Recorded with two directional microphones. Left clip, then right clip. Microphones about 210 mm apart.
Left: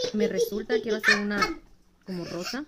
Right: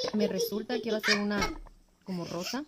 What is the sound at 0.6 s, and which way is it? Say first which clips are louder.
Speech: left 5 dB; 15° right (ahead or behind).